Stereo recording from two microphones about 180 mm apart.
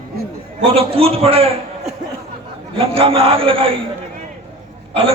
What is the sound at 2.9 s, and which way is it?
Speech, 30° right (ahead or behind).